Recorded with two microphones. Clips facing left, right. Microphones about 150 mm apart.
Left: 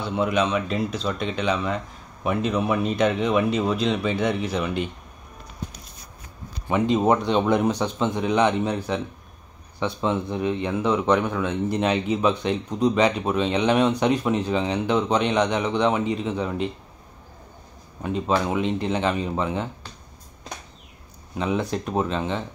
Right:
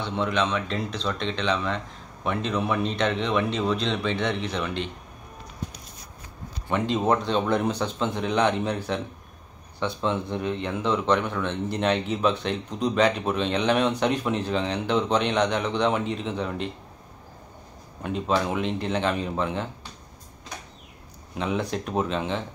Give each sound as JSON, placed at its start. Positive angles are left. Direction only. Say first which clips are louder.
{"t": 0.0, "sound": "a man's voice", "louder": "left 3 dB", "side_deg": 5}
{"t": 6.7, "sound": "a man's voice", "louder": "left 3 dB", "side_deg": 10}
{"t": 9.8, "sound": "a man's voice", "louder": "left 2 dB", "side_deg": 10}
{"t": 18.2, "sound": "speech", "louder": "left 2 dB", "side_deg": 5}
{"t": 21.4, "sound": "speech", "louder": "left 2 dB", "side_deg": 0}